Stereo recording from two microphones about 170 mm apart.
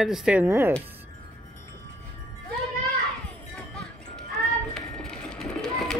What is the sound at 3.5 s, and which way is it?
Music, 5° left (ahead or behind).